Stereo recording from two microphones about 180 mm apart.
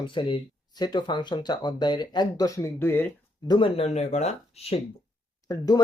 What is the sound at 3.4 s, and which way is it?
Speech, 25° left (ahead or behind).